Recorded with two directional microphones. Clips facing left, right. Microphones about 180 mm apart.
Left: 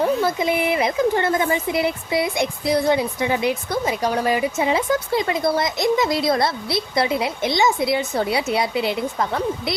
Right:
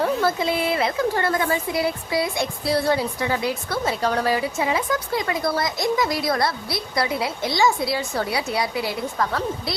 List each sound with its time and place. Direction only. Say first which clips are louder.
0.0 s speech: left 2 dB; 15° left (ahead or behind)